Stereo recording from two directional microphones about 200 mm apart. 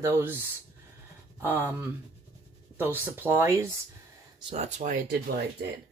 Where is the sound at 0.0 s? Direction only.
10° right (ahead or behind).